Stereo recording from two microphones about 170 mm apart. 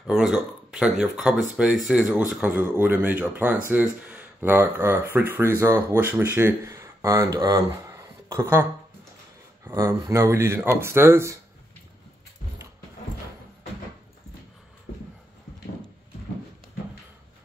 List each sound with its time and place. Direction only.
0.0 s speech: 5° right (ahead or behind)
9.7 s speech: 20° right (ahead or behind)